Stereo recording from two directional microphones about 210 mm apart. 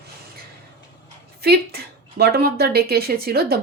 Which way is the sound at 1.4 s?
50° right (ahead or behind).